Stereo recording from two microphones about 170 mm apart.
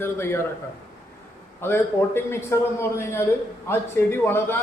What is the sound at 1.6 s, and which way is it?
A man's voice, 15° left (ahead or behind).